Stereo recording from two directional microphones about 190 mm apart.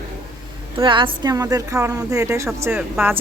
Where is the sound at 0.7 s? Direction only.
25° right (ahead or behind).